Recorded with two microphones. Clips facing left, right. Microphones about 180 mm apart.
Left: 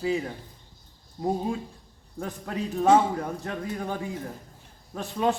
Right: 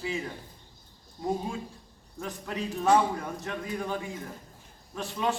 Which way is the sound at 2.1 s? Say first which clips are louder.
Left 2 dB; 55° left (ahead or behind).